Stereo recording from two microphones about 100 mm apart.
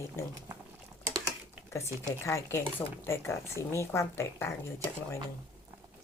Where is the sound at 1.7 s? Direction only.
30° left (ahead or behind).